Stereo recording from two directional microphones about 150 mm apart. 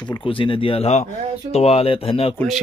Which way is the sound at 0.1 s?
35° left (ahead or behind).